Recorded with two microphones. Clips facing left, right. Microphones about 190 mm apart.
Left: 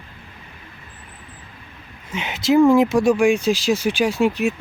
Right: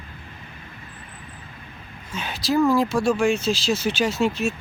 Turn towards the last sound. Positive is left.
turn(degrees=15)  # may be behind; listen again after turning